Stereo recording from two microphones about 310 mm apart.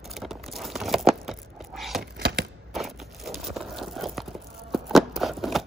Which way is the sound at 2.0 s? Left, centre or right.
Right.